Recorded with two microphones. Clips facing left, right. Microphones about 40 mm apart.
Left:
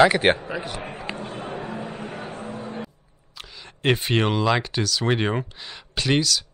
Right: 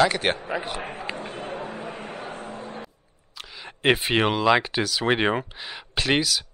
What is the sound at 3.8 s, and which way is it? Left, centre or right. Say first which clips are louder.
Speech: right 1 dB; centre.